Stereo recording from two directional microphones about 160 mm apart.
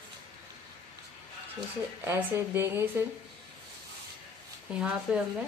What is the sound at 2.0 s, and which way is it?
Speech, 15° right (ahead or behind).